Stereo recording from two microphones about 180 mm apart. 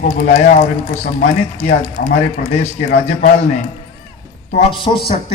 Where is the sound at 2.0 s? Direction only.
40° left (ahead or behind).